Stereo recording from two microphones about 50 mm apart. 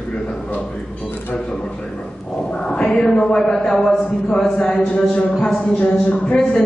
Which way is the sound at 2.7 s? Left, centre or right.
Centre.